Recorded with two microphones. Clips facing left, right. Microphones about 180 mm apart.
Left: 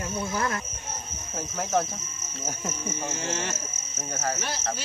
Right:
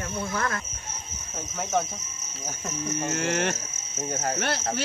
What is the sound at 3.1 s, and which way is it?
Speech, 65° right (ahead or behind).